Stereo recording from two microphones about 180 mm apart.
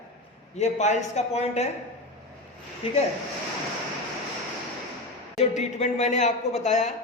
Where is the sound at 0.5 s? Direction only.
40° left (ahead or behind).